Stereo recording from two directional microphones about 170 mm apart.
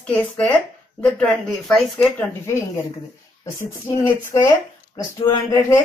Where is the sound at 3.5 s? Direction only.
15° left (ahead or behind).